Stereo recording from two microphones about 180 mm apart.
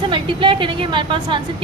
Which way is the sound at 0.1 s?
30° right (ahead or behind).